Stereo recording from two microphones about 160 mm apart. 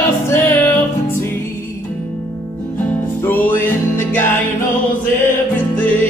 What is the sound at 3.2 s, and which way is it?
Music, 10° left (ahead or behind).